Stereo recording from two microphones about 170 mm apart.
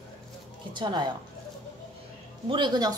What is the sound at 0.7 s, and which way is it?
Speech, 25° right (ahead or behind).